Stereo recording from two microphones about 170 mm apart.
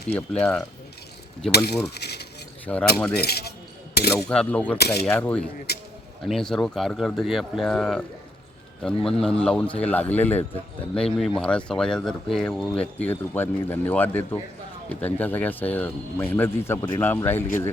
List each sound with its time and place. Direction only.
0.2 s speech: 5° left (ahead or behind)
1.5 s speech: 70° left (ahead or behind)
2.7 s speech: 10° left (ahead or behind)
3.1 s cutlery: 70° left (ahead or behind)
4.0 s speech: 70° left (ahead or behind)
4.3 s speech: 5° left (ahead or behind)
4.8 s cutlery: 75° left (ahead or behind)
5.0 s speech: 10° left (ahead or behind)
5.7 s speech: 70° left (ahead or behind)
6.2 s speech: centre (ahead or behind)